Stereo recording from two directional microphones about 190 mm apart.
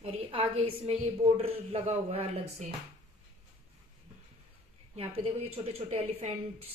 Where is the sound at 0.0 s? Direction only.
30° right (ahead or behind).